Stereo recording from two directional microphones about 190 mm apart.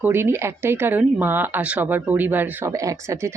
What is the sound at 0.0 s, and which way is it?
Speech, 10° right (ahead or behind).